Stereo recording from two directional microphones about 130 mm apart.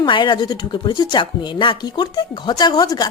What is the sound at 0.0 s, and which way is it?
A woman's voice, 40° left (ahead or behind).